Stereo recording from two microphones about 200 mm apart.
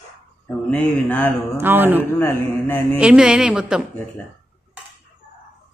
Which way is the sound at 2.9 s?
5° right (ahead or behind).